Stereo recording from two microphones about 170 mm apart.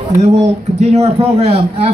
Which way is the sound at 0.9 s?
40° right (ahead or behind).